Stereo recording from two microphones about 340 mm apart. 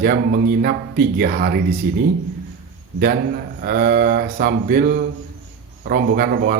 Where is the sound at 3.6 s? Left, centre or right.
Right.